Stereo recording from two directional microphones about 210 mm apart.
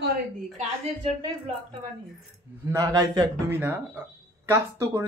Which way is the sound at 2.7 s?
15° right (ahead or behind).